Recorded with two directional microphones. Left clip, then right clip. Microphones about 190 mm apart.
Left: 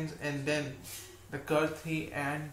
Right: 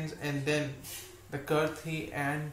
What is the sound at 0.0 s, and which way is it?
Speech, 10° right (ahead or behind).